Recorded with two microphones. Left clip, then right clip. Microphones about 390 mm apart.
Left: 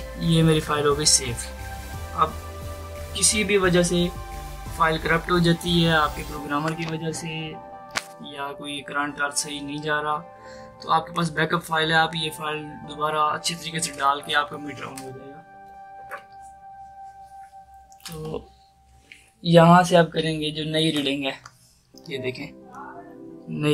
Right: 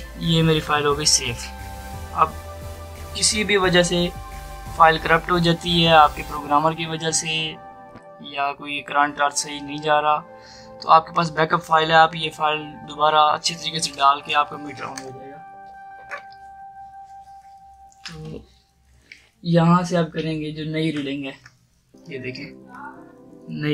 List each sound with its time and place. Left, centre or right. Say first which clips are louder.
0.2 s speech: right 2 dB; centre
3.1 s speech: right 2 dB; centre
7.2 s speech: right 9 dB; right
8.2 s speech: right 7 dB; centre
19.4 s speech: left 5 dB; left
22.1 s speech: left 2 dB; centre